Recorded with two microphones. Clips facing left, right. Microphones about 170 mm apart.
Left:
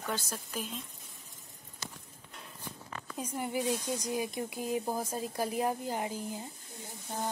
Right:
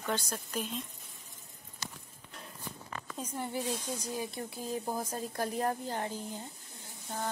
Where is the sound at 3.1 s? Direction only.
10° left (ahead or behind).